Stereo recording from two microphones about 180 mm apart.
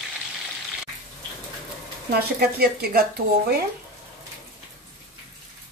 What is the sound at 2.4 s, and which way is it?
Speech, 60° right (ahead or behind).